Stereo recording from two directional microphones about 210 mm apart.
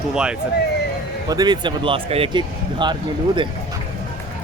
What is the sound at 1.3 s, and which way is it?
Speech, 20° right (ahead or behind).